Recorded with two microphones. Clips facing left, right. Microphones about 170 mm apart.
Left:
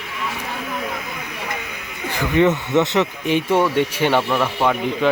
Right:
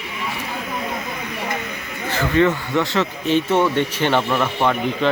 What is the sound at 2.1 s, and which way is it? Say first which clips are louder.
Speech: left 1 dB; 15° left (ahead or behind).